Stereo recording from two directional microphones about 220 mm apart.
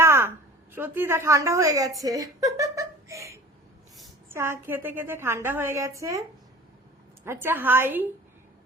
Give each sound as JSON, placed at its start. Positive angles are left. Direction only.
{"t": 0.0, "sound": "a sound", "side_deg": -10}
{"t": 2.0, "sound": "a woman's voice", "side_deg": -15}
{"t": 7.3, "sound": "a woman's voice", "side_deg": -10}